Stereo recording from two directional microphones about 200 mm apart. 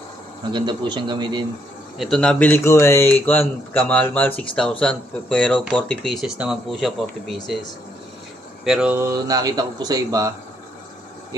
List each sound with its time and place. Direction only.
0.5 s a man's voice: 25° right (ahead or behind)
2.0 s speech: 5° left (ahead or behind)
8.6 s speech: 5° right (ahead or behind)